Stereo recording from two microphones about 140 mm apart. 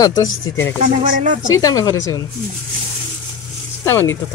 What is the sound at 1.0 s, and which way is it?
Speech, 65° right (ahead or behind).